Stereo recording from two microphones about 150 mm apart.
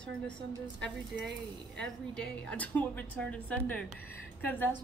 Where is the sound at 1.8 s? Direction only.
10° left (ahead or behind).